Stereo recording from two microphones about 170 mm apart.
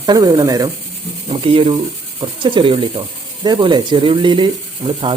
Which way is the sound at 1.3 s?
30° right (ahead or behind).